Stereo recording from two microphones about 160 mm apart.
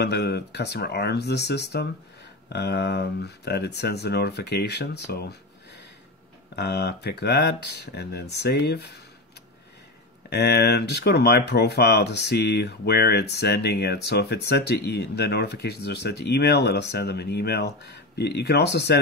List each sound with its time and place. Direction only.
0.0 s speech: 90° left
10.3 s speech: 90° left